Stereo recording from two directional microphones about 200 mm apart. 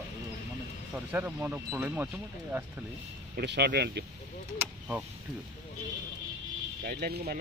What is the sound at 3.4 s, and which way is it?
Speech, 55° right (ahead or behind).